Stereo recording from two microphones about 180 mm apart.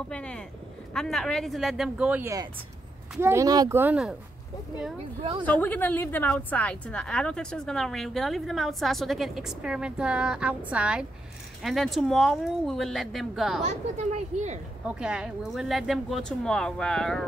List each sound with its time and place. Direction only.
0.1 s a woman's voice: 5° left (ahead or behind)
5.4 s a woman's voice: 10° left (ahead or behind)
13.7 s speech: 40° right (ahead or behind)
14.9 s a woman's voice: 5° right (ahead or behind)